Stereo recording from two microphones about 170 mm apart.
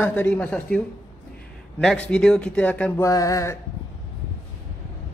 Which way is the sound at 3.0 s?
20° left (ahead or behind).